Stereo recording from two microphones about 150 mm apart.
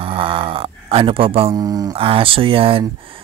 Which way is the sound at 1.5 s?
25° right (ahead or behind).